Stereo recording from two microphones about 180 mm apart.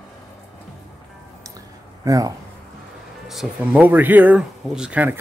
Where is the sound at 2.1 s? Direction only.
20° right (ahead or behind).